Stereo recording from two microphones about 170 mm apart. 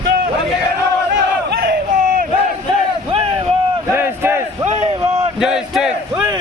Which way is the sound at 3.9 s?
15° right (ahead or behind).